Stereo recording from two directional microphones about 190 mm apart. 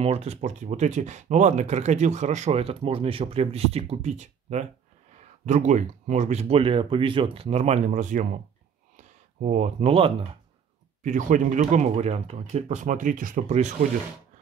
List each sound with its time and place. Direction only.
0.0 s speech: 30° right (ahead or behind)
8.9 s a sound: 40° right (ahead or behind)
11.0 s speech: 40° right (ahead or behind)